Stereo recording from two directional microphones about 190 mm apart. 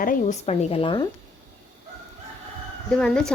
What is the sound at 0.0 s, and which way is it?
A woman's voice, 45° left (ahead or behind).